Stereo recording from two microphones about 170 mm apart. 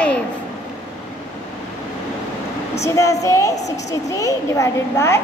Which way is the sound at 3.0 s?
20° left (ahead or behind).